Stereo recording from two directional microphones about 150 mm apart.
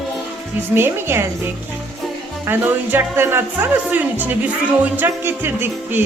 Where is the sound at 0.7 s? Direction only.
15° right (ahead or behind).